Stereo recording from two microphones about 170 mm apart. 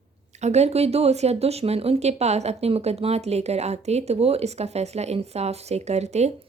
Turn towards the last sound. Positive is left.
turn(degrees=-40)  # may be behind; listen again after turning